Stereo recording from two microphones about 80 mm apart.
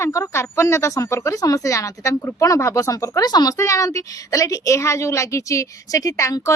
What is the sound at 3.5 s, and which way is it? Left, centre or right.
A woman's voice, left.